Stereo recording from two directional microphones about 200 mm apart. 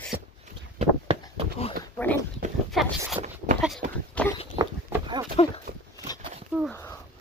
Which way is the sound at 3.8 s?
35° right (ahead or behind).